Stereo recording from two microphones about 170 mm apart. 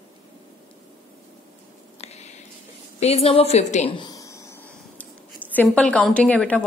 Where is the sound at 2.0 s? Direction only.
40° left (ahead or behind).